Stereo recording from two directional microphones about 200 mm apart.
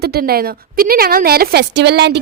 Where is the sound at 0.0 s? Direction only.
50° right (ahead or behind).